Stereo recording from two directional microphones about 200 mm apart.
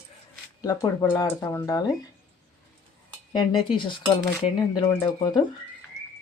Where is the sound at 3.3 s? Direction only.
25° left (ahead or behind).